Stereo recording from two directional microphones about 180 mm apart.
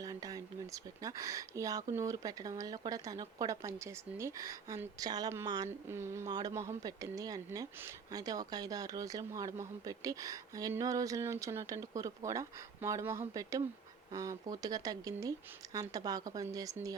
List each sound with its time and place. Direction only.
0.0 s speech: 20° right (ahead or behind)